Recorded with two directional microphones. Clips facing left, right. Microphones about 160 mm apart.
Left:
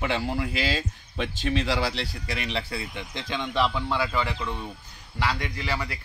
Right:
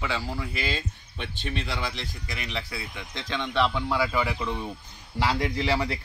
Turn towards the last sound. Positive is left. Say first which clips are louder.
# right 5 dB
turn(degrees=-30)  # may be behind; listen again after turning